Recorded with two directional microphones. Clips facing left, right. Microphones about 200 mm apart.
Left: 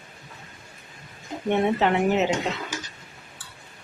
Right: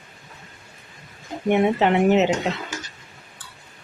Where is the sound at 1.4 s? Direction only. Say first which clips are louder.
Right 3 dB; 15° right (ahead or behind).